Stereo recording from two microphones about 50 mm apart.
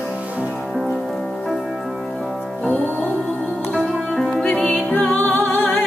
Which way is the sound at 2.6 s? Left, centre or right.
Left.